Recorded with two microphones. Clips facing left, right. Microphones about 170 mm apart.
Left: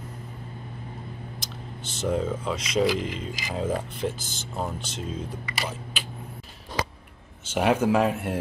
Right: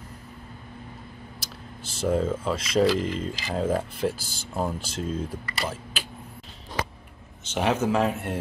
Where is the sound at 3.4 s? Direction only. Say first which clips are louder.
Right 2 dB; 10° left (ahead or behind).